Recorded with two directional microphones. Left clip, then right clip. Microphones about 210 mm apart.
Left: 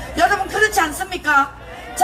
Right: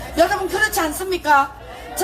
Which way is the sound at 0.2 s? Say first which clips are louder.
Left 1 dB; 15° left (ahead or behind).